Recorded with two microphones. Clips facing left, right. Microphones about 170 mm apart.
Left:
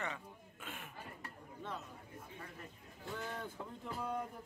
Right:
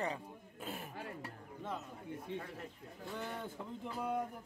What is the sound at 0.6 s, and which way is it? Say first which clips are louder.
Throat clearing: right 5 dB; 35° right (ahead or behind).